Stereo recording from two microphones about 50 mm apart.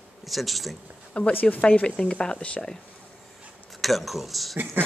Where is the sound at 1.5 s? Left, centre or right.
Left.